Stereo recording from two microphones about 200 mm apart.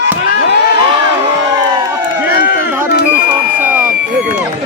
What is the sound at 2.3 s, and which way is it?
Run, 50° left (ahead or behind).